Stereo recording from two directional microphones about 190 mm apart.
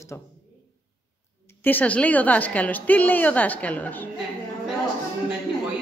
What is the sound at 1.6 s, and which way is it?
Speech, 10° left (ahead or behind).